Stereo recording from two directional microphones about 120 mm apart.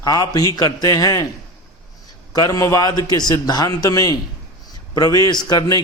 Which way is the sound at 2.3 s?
30° left (ahead or behind).